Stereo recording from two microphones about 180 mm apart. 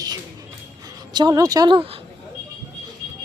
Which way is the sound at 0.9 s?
20° right (ahead or behind).